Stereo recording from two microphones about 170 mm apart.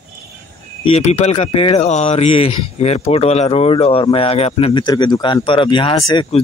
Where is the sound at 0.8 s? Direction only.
35° left (ahead or behind).